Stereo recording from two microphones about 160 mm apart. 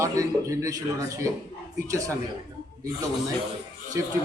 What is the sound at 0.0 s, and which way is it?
Speech, 20° right (ahead or behind).